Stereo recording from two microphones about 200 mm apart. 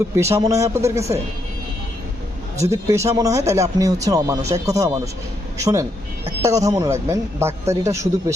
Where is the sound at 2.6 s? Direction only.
15° right (ahead or behind).